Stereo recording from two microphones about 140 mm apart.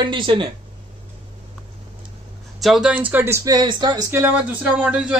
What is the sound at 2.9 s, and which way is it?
Speech, 10° right (ahead or behind).